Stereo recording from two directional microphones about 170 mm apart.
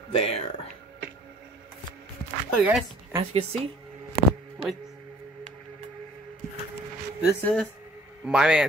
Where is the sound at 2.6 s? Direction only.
10° right (ahead or behind).